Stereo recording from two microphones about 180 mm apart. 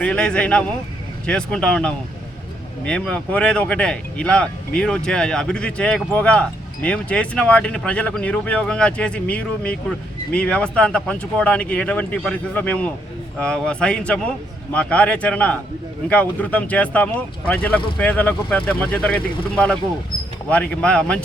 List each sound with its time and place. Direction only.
0.0 s speech: 5° left (ahead or behind)